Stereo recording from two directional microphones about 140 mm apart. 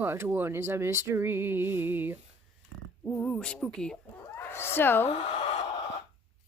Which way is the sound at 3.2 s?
5° left (ahead or behind).